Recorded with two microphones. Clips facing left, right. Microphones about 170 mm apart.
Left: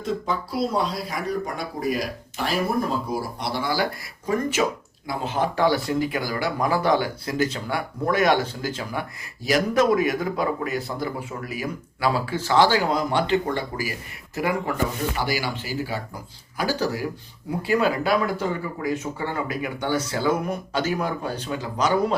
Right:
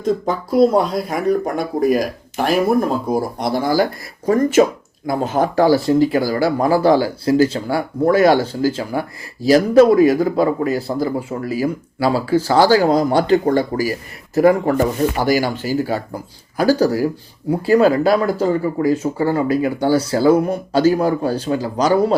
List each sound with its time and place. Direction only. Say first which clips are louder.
0.0 s speech: right 7 dB; 45° right (ahead or behind)